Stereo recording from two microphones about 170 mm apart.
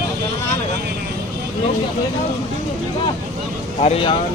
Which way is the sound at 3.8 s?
35° left (ahead or behind).